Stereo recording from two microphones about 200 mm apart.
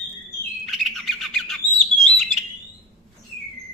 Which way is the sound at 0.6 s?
Centre (ahead or behind).